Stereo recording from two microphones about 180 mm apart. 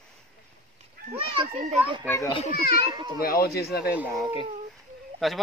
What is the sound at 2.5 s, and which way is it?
Speech, 60° left (ahead or behind).